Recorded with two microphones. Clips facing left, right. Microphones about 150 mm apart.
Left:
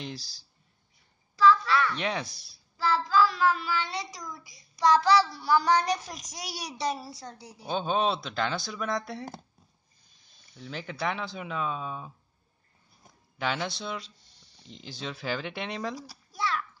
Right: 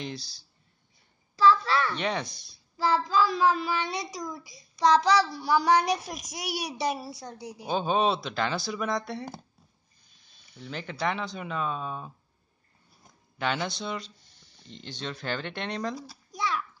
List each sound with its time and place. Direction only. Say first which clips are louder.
0.0 s speech: right 2 dB; 5° left (ahead or behind)
1.3 s a sound: even; 30° right (ahead or behind)
2.0 s speech: right 1 dB; centre (ahead or behind)
2.8 s a child's voice: even; 20° right (ahead or behind); by 9.4 s centre (ahead or behind)
10.6 s speech: right 2 dB; centre (ahead or behind)
13.4 s speech: right 1 dB; centre (ahead or behind)
16.3 s a sound: even; 15° right (ahead or behind)